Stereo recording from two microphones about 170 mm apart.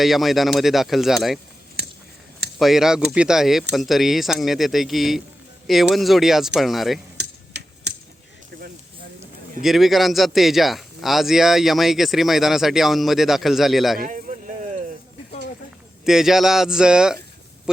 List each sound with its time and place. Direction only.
0.0 s a man's voice: centre (ahead or behind)
1.8 s a sound: 70° right (ahead or behind)
2.6 s a man's voice: centre (ahead or behind)
7.2 s typewriter: 85° right
9.6 s a man's voice: centre (ahead or behind)
14.0 s a sound: 50° right (ahead or behind)
16.0 s a man's voice: centre (ahead or behind)